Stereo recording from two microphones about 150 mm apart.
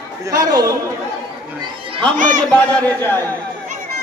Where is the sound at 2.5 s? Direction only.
10° left (ahead or behind).